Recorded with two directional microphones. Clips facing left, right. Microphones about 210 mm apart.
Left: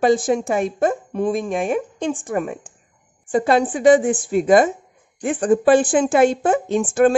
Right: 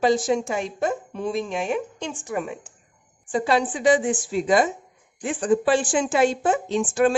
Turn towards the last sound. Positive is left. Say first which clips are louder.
# left 4 dB
turn(degrees=55)  # may be behind; listen again after turning